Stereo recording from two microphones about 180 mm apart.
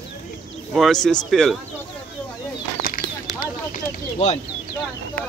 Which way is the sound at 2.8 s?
50° left (ahead or behind).